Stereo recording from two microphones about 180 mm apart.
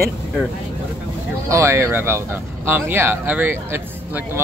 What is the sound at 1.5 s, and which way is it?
Speech, 15° right (ahead or behind).